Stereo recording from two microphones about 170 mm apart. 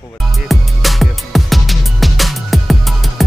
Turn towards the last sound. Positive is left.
turn(degrees=0)  # may be behind; listen again after turning